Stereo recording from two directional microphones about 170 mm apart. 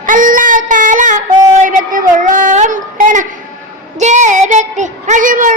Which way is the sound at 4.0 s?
45° right (ahead or behind).